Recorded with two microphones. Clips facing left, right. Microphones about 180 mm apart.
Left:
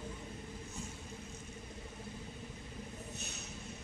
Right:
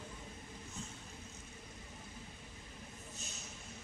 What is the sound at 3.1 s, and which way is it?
Vehicle, 65° left (ahead or behind).